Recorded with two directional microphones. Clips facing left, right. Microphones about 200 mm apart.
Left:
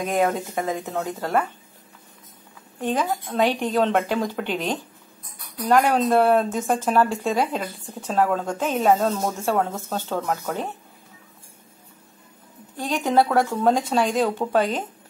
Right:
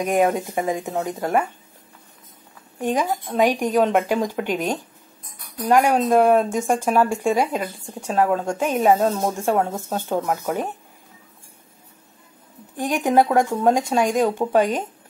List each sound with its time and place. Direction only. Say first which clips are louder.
0.0 s speech: right 3 dB; 15° right (ahead or behind)
2.8 s speech: right 2 dB; 10° right (ahead or behind)
12.7 s speech: right 2 dB; 15° right (ahead or behind)